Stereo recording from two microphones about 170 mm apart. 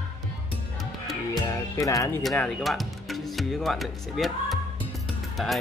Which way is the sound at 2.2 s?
Centre (ahead or behind).